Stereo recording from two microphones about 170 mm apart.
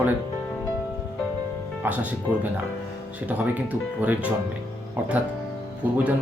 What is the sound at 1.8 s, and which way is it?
Speech, 10° right (ahead or behind).